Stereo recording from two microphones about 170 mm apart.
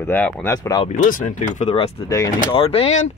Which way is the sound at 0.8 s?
45° left (ahead or behind).